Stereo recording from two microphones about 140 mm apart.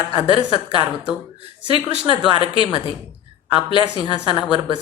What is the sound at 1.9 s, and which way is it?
Speech, 40° left (ahead or behind).